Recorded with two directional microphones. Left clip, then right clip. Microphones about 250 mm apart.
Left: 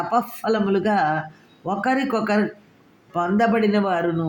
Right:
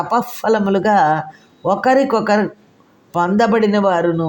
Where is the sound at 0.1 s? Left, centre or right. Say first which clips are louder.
Right 5 dB; right.